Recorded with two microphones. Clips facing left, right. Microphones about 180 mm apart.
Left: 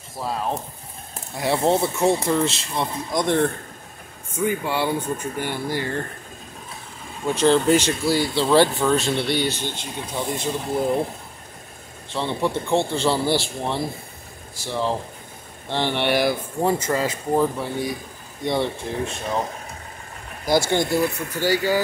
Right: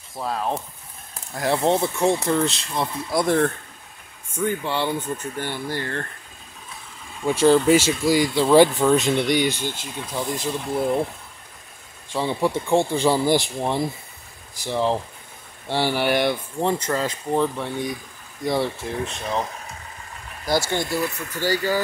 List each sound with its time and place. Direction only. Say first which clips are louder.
0.2 s speech: even; centre (ahead or behind)
4.5 s speech: left 1 dB; 10° left (ahead or behind)
7.2 s speech: right 2 dB; 10° right (ahead or behind)
9.8 s speech: even; centre (ahead or behind)
12.1 s speech: right 1 dB; 10° right (ahead or behind)
20.7 s speech: left 4 dB; 15° left (ahead or behind)